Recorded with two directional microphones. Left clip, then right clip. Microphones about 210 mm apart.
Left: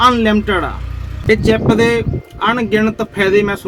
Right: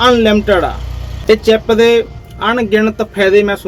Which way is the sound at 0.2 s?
45° left (ahead or behind).